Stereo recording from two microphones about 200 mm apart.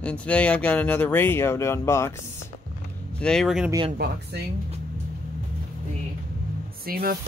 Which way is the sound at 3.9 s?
55° right (ahead or behind).